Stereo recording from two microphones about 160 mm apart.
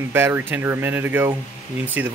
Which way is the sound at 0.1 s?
10° right (ahead or behind).